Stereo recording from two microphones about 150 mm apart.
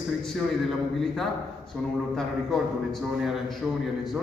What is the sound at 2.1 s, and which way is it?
A man's voice, centre (ahead or behind).